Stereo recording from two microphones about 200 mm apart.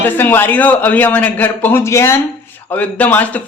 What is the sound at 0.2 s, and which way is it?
A man's voice, 10° left (ahead or behind).